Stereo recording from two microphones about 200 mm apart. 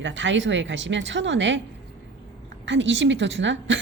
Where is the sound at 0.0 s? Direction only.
65° right (ahead or behind).